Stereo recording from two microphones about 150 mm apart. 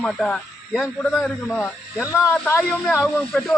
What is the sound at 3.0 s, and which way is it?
Speech, 5° left (ahead or behind).